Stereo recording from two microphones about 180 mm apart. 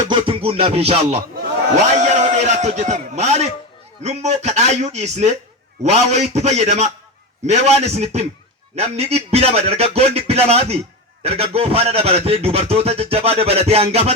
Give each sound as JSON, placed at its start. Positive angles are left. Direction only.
{"t": 0.1, "sound": "a man's voice", "side_deg": -30}